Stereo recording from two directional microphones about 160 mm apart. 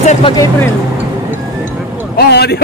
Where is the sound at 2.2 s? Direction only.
90° left.